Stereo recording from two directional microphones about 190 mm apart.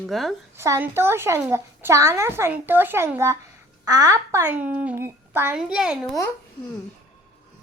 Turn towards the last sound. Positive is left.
turn(degrees=0)  # may be behind; listen again after turning